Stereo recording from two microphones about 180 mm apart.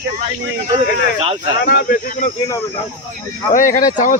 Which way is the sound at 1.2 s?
30° right (ahead or behind).